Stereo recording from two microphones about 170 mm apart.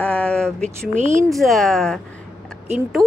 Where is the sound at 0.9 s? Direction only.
45° right (ahead or behind).